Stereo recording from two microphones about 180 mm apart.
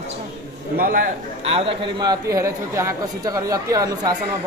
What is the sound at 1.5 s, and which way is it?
A man's voice, 25° right (ahead or behind).